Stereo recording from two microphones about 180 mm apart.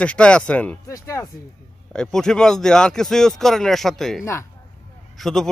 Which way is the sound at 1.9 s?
5° left (ahead or behind).